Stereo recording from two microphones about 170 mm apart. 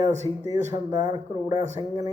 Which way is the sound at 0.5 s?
25° right (ahead or behind).